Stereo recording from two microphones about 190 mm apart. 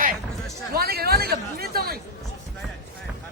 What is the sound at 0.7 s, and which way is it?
Chatter, 55° right (ahead or behind).